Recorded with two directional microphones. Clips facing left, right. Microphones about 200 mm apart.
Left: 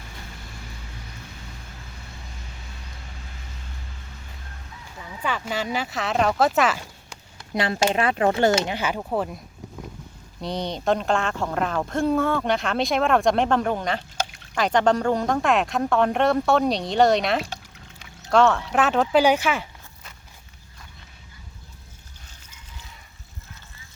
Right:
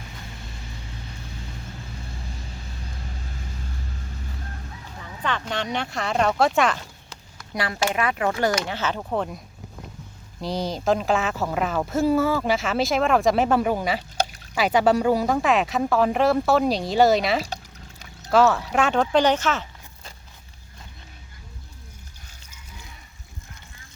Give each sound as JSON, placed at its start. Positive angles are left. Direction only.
{"t": 5.2, "sound": "speech", "side_deg": 5}
{"t": 7.3, "sound": "speech", "side_deg": 25}
{"t": 8.7, "sound": "speech", "side_deg": 10}
{"t": 10.4, "sound": "speech", "side_deg": 0}